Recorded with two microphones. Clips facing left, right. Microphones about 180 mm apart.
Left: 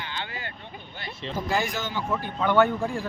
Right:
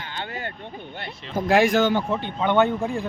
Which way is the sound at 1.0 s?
60° right (ahead or behind).